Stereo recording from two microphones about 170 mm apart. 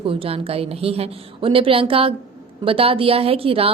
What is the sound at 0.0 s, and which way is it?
A woman's voice, 35° right (ahead or behind).